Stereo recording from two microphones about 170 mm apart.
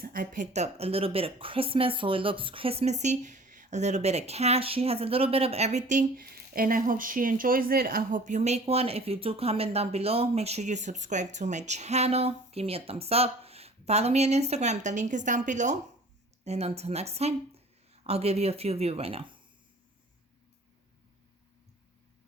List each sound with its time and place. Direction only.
0.0 s speech: 55° right (ahead or behind); by 19.2 s 35° right (ahead or behind)